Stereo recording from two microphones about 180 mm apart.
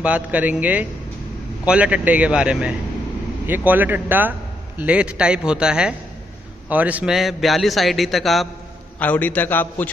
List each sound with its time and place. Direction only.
0.0 s a man's voice: 10° right (ahead or behind); by 9.8 s 10° left (ahead or behind)